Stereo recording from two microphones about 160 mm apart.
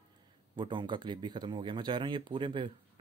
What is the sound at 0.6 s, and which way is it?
Speech, 30° right (ahead or behind).